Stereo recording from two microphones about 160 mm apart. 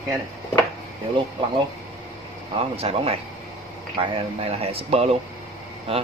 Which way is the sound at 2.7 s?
40° right (ahead or behind).